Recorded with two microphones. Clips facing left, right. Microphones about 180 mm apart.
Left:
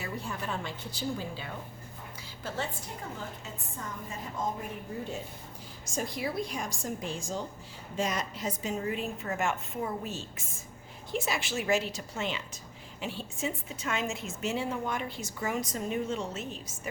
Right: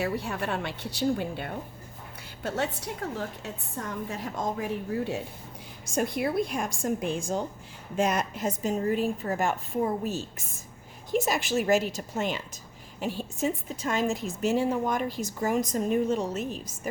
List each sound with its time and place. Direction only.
0.0 s a woman's voice: 70° right (ahead or behind)
5.9 s a woman's voice: 60° right (ahead or behind); by 16.6 s 40° right (ahead or behind)